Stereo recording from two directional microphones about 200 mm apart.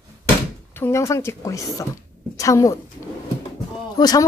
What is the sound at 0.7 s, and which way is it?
A woman's voice, 15° left (ahead or behind).